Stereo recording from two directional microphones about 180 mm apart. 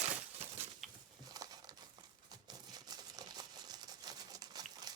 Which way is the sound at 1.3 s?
20° right (ahead or behind).